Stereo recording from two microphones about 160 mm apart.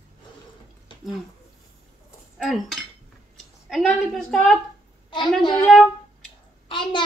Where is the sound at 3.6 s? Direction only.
Centre (ahead or behind).